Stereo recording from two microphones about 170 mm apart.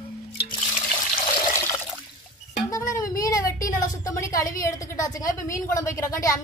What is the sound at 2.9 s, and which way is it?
A woman's voice, 20° left (ahead or behind).